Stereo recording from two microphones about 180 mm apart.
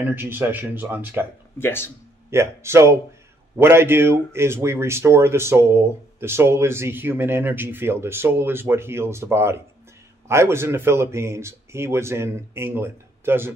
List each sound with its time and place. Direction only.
0.0 s a man's voice: 10° right (ahead or behind)
1.6 s speech: 15° left (ahead or behind)
2.3 s a man's voice: 15° right (ahead or behind)